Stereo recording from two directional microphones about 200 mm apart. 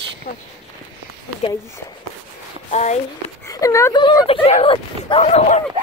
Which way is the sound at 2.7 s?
35° left (ahead or behind).